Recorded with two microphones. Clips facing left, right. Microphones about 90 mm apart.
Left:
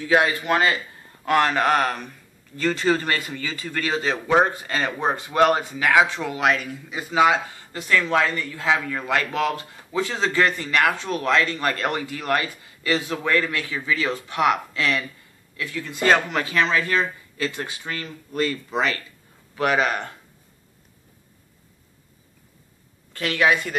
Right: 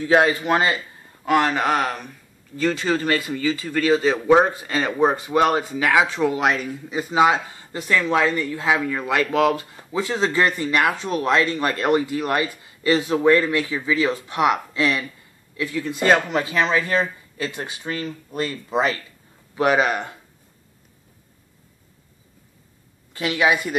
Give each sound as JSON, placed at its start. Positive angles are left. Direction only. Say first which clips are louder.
{"t": 0.1, "sound": "speech", "louder": "right 2 dB", "side_deg": -25}
{"t": 1.2, "sound": "speech", "louder": "even", "side_deg": -15}
{"t": 3.2, "sound": "a man's voice", "louder": "right 7 dB", "side_deg": -20}
{"t": 23.1, "sound": "speech", "louder": "right 1 dB", "side_deg": -15}